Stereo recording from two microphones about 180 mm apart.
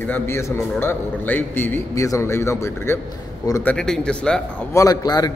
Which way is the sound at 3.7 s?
5° left (ahead or behind).